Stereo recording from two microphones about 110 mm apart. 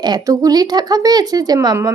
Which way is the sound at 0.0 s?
35° right (ahead or behind).